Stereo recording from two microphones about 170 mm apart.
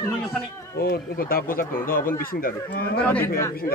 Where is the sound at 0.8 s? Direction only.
65° left (ahead or behind).